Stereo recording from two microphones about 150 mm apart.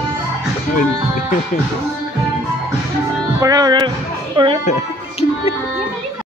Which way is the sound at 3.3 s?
25° right (ahead or behind).